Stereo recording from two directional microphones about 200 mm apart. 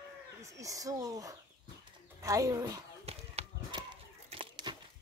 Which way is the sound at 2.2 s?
15° right (ahead or behind).